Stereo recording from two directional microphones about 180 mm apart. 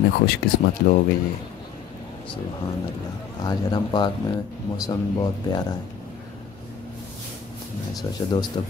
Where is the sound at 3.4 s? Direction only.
20° left (ahead or behind).